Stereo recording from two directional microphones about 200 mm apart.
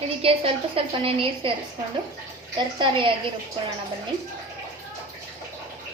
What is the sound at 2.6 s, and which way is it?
Speech, 25° right (ahead or behind).